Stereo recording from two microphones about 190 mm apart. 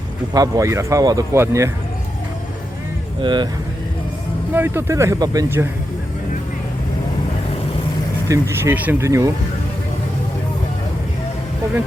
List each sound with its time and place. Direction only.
0.3 s speech: 20° right (ahead or behind)
3.2 s speech: 25° right (ahead or behind)
4.5 s speech: 10° right (ahead or behind)
8.3 s speech: 15° right (ahead or behind)